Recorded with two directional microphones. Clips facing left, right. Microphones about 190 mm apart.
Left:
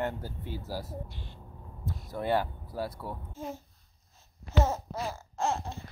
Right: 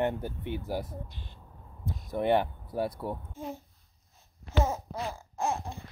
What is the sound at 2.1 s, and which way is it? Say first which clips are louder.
Speech: right 3 dB; 20° right (ahead or behind).